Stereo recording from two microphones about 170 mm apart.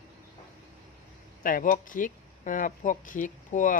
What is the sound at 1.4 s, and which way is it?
Speech, 55° left (ahead or behind).